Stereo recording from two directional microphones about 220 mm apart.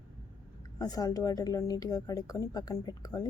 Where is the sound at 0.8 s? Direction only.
15° left (ahead or behind).